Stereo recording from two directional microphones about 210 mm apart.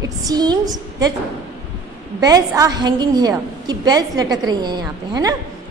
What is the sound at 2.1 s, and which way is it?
A woman's voice, 15° right (ahead or behind).